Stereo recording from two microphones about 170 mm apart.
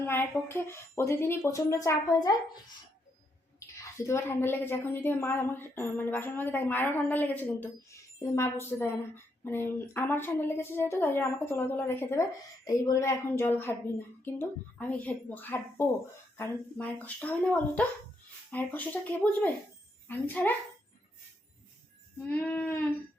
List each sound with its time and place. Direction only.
0.0 s a woman's voice: 15° left (ahead or behind)
3.9 s a woman's voice: 15° left (ahead or behind)
22.3 s a woman's voice: 10° left (ahead or behind)